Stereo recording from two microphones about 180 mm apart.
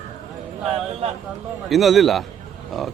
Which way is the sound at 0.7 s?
35° right (ahead or behind).